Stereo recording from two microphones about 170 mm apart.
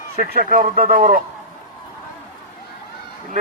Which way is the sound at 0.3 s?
60° right (ahead or behind).